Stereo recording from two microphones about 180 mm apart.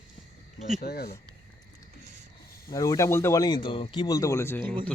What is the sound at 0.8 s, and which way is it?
Speech, 60° left (ahead or behind).